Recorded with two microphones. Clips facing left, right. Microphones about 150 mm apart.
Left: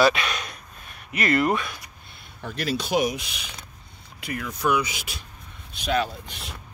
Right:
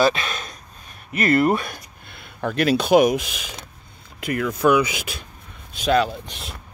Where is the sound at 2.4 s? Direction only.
65° right (ahead or behind).